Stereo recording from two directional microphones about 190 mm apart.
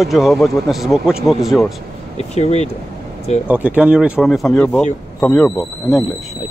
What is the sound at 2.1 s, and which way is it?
Speech, 35° left (ahead or behind).